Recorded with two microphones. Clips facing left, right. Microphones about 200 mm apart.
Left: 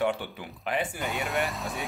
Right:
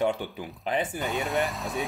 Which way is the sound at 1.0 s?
Centre (ahead or behind).